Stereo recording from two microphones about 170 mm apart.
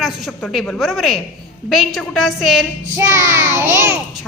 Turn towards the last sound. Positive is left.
turn(degrees=-15)  # may be behind; listen again after turning